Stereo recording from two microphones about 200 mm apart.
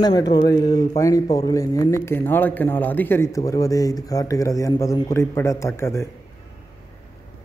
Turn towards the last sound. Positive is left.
turn(degrees=15)  # may be behind; listen again after turning